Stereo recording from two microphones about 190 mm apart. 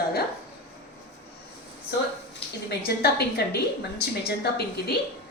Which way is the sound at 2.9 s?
55° left (ahead or behind).